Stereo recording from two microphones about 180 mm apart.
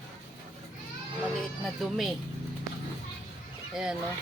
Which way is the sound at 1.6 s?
Centre (ahead or behind).